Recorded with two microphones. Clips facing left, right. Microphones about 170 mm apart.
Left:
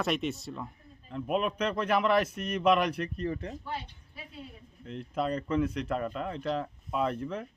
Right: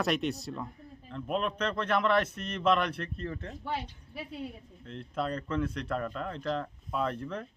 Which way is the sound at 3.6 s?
70° right (ahead or behind).